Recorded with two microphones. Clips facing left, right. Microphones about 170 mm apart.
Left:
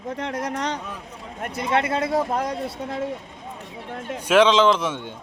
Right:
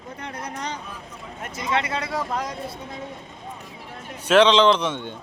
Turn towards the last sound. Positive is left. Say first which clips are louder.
# right 1 dB
turn(degrees=10)  # may be behind; listen again after turning